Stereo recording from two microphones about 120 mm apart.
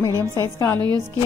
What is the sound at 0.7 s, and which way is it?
Speech, 35° right (ahead or behind).